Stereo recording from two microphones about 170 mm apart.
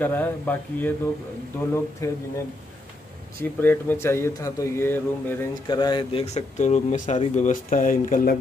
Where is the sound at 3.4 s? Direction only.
10° left (ahead or behind).